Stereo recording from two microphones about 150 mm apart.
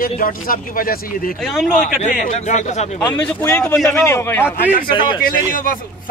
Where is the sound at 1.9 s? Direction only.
60° left (ahead or behind).